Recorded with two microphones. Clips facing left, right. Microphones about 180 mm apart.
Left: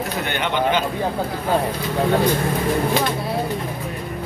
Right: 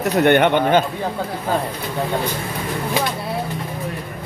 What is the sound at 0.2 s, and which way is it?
Speech, 60° right (ahead or behind).